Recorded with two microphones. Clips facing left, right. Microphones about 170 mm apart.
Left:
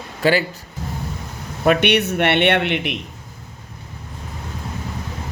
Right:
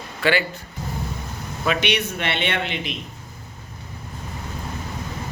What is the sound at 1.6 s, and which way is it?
Speech, 55° left (ahead or behind).